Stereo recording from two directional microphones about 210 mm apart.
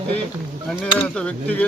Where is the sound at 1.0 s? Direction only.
5° left (ahead or behind).